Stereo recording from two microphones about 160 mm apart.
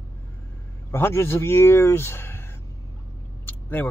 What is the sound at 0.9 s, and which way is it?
Speech, 15° left (ahead or behind).